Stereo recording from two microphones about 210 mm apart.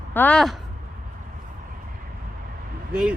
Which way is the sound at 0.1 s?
5° left (ahead or behind).